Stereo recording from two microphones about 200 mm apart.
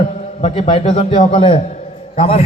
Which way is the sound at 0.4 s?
30° left (ahead or behind).